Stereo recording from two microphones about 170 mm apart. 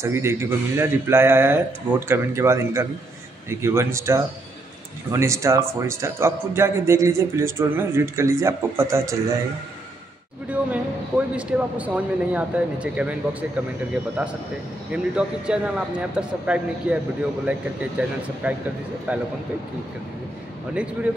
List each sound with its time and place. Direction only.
0.0 s a man's voice: 15° right (ahead or behind)
10.5 s a man's voice: 10° right (ahead or behind)
14.9 s a man's voice: 5° right (ahead or behind)
20.7 s a man's voice: 5° right (ahead or behind)